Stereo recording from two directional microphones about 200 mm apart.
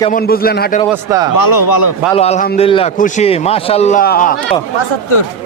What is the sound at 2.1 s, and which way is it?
Speech, 30° left (ahead or behind).